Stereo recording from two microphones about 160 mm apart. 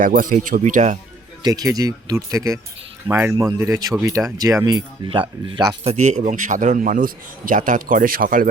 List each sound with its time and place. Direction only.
0.0 s a man's voice: 60° right (ahead or behind)
1.4 s a man's voice: 25° right (ahead or behind); by 8.4 s 60° right (ahead or behind)